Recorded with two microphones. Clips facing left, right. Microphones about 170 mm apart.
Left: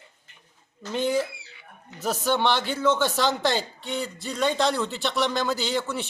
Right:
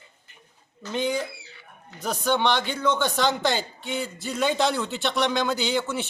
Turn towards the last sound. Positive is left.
turn(degrees=0)  # may be behind; listen again after turning